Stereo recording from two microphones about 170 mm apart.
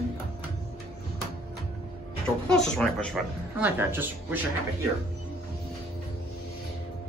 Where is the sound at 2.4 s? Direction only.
5° left (ahead or behind).